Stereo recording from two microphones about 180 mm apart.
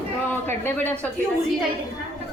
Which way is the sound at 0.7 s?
10° left (ahead or behind).